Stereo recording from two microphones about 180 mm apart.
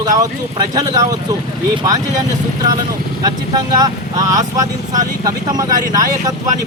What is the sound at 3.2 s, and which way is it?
Speech, 20° right (ahead or behind).